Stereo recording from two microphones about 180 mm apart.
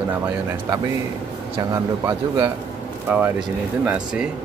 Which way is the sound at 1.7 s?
15° right (ahead or behind).